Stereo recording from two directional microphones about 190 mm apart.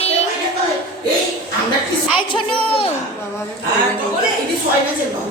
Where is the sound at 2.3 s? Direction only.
30° left (ahead or behind).